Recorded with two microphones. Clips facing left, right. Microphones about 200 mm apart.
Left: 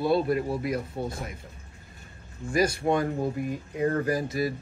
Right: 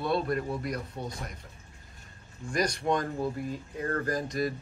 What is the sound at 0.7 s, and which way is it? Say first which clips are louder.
Speech: left 5 dB; 25° left (ahead or behind).